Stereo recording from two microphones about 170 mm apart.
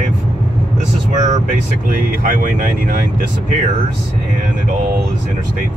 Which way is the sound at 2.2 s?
50° right (ahead or behind).